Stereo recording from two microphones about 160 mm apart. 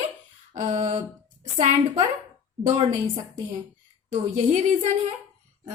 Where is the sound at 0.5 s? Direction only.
50° right (ahead or behind).